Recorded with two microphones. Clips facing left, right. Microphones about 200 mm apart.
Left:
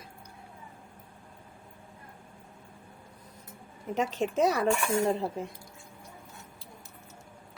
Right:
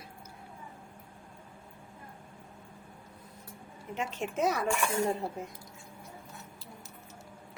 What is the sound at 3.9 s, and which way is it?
Speech, 40° left (ahead or behind).